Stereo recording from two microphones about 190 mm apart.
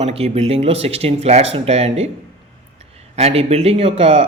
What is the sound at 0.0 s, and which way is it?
A man's voice, 30° right (ahead or behind).